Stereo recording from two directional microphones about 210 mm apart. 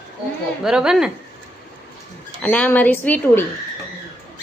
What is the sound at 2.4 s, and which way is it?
A woman's voice, 5° left (ahead or behind).